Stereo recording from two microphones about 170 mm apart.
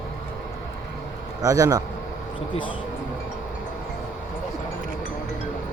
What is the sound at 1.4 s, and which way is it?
Speech, 20° right (ahead or behind).